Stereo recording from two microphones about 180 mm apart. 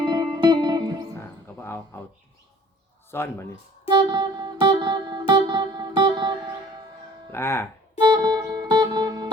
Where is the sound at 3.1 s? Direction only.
15° left (ahead or behind).